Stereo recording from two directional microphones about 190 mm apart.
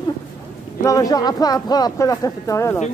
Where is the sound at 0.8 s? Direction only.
20° left (ahead or behind).